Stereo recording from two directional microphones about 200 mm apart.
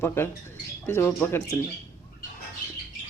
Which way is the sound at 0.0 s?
10° left (ahead or behind).